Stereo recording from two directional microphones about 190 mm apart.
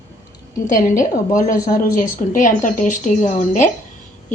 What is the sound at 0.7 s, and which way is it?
A woman's voice, 45° left (ahead or behind).